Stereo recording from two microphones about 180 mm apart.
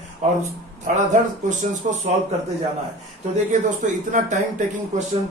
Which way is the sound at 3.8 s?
45° right (ahead or behind).